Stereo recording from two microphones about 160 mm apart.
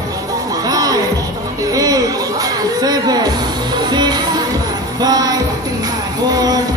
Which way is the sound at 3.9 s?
25° right (ahead or behind).